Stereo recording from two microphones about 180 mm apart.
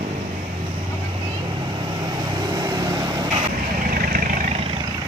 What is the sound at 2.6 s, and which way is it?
Vehicle, 20° right (ahead or behind).